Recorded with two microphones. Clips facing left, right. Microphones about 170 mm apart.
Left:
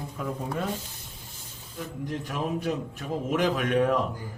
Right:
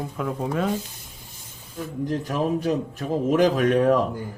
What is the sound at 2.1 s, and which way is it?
Speech, 35° right (ahead or behind).